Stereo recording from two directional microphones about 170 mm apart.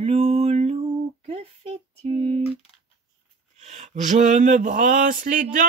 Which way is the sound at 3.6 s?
45° right (ahead or behind).